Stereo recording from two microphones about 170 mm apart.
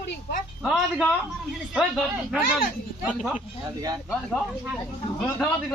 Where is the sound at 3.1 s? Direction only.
5° right (ahead or behind).